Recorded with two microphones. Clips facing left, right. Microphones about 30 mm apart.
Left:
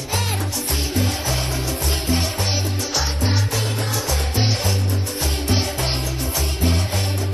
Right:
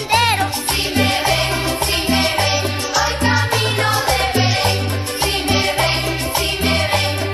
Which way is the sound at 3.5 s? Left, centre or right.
Right.